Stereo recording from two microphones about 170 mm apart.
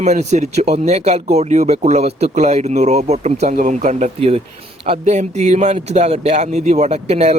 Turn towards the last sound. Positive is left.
turn(degrees=-40)  # may be behind; listen again after turning